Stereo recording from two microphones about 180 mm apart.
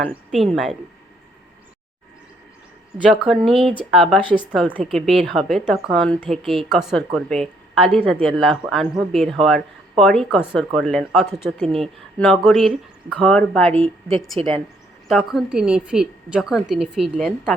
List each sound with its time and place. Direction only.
0.1 s a woman's voice: centre (ahead or behind)
3.1 s a woman's voice: centre (ahead or behind)
4.2 s speech: 30° right (ahead or behind)
4.9 s a woman's voice: centre (ahead or behind)
13.7 s a woman's voice: 30° right (ahead or behind)
15.0 s a woman's voice: centre (ahead or behind)